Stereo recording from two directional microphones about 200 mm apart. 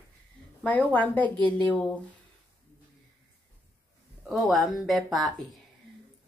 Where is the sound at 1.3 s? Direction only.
25° right (ahead or behind).